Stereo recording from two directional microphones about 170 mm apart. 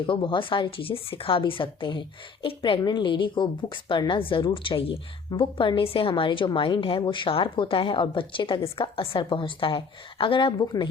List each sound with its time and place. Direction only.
0.0 s a woman's voice: 30° left (ahead or behind)